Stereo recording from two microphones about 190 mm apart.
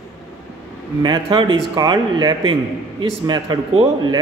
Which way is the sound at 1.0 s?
25° right (ahead or behind).